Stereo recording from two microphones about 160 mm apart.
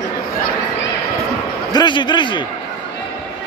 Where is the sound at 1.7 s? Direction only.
30° left (ahead or behind).